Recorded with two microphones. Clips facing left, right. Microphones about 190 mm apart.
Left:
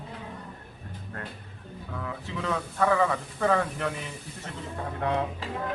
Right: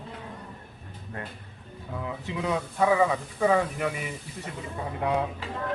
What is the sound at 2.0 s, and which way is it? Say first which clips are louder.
A man's voice: right 3 dB; 15° right (ahead or behind).